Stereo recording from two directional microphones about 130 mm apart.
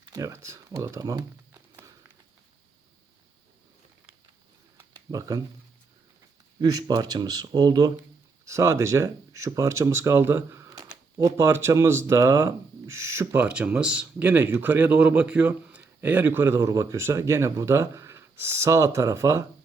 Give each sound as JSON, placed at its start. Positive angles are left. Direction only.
{"t": 0.1, "sound": "speech", "side_deg": -25}
{"t": 4.8, "sound": "a sound", "side_deg": -25}
{"t": 6.6, "sound": "speech", "side_deg": -30}